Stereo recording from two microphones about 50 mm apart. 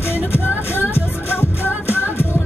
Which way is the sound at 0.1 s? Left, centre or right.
Left.